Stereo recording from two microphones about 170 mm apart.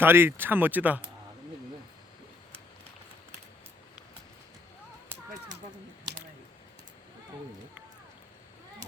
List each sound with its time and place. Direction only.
0.0 s speech: 15° right (ahead or behind)